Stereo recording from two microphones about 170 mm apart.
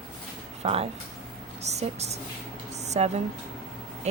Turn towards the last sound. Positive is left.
turn(degrees=-40)  # may be behind; listen again after turning